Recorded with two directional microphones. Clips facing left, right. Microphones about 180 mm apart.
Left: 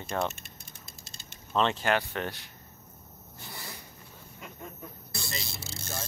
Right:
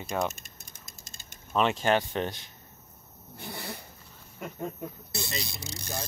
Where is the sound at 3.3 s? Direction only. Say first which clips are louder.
Right 6 dB; 60° right (ahead or behind).